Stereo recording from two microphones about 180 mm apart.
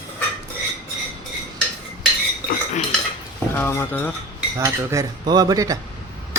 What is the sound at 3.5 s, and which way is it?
Speech, 15° left (ahead or behind).